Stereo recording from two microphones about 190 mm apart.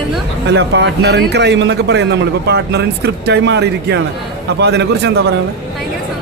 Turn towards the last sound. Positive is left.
turn(degrees=-60)  # may be behind; listen again after turning